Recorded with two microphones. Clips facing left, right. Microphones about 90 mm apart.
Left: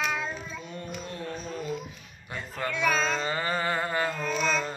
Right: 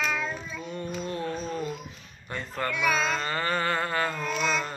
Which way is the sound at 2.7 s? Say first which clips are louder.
Even; 30° left (ahead or behind).